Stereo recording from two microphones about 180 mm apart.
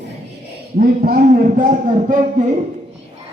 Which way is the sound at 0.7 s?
55° right (ahead or behind).